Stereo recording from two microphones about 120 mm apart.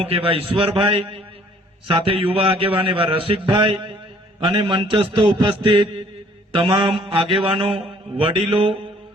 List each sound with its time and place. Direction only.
0.0 s a man's voice: 50° right (ahead or behind)